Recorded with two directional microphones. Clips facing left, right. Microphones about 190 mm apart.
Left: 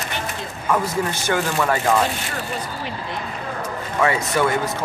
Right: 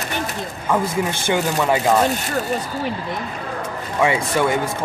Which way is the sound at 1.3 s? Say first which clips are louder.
Right 2 dB; 20° right (ahead or behind).